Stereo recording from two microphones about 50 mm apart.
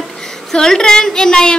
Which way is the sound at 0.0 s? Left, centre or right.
Centre.